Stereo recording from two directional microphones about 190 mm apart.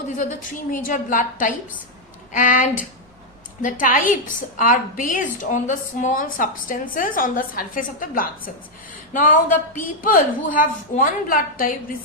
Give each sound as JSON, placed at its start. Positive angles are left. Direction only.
{"t": 0.7, "sound": "a woman's voice", "side_deg": 45}